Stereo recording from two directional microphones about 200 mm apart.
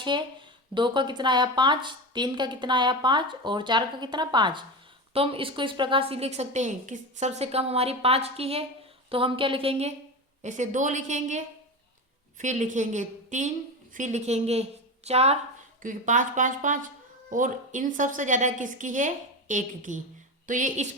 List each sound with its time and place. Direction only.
0.0 s a woman's voice: 25° right (ahead or behind)